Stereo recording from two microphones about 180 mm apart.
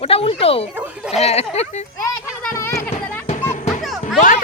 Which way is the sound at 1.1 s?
35° left (ahead or behind).